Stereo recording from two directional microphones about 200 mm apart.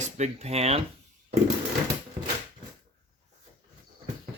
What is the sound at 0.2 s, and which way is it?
Speech, 30° right (ahead or behind).